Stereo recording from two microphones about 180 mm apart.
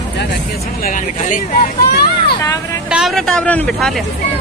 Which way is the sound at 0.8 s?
45° left (ahead or behind).